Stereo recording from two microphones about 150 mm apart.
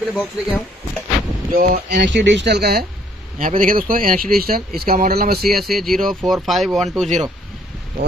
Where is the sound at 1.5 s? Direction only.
75° right (ahead or behind).